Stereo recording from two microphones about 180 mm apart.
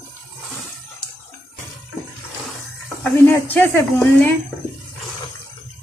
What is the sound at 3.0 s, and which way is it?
Speech, 10° left (ahead or behind).